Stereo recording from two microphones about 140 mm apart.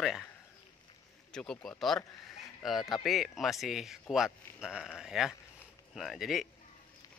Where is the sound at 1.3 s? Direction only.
5° left (ahead or behind).